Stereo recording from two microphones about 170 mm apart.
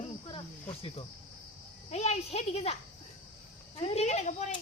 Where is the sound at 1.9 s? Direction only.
40° left (ahead or behind).